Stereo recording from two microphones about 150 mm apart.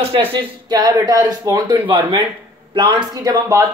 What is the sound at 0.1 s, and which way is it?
Speech, 35° right (ahead or behind).